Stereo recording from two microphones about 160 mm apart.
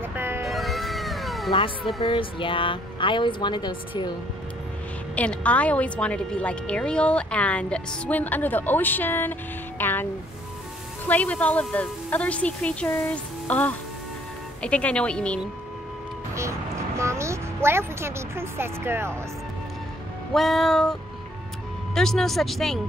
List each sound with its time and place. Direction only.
0.0 s music: 15° right (ahead or behind)
0.5 s cat: centre (ahead or behind)
1.5 s speech: 30° left (ahead or behind)
5.1 s a woman's voice: 10° left (ahead or behind)
11.1 s a woman's voice: 10° left (ahead or behind)
16.3 s speech: 20° right (ahead or behind)
20.3 s speech: centre (ahead or behind)